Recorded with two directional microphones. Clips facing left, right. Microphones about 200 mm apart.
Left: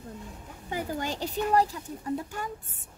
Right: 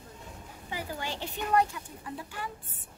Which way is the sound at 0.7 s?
45° left (ahead or behind).